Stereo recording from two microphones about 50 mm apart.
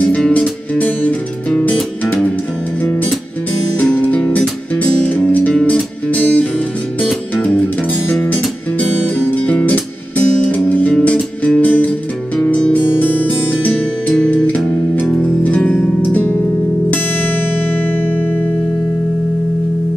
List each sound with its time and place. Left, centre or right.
0.3 s music: left
3.9 s music: left
9.0 s music: left
12.7 s music: left
14.0 s music: centre
15.4 s music: left